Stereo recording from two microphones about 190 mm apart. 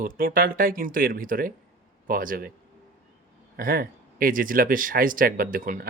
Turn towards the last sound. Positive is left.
turn(degrees=-50)  # may be behind; listen again after turning